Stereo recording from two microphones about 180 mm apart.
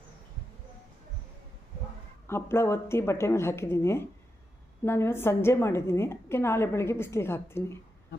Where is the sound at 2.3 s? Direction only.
15° left (ahead or behind).